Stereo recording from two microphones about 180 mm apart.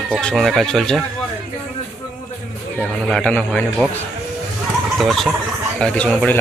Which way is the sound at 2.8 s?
5° left (ahead or behind).